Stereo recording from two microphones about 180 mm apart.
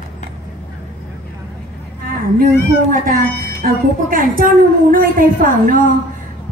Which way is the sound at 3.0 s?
50° right (ahead or behind).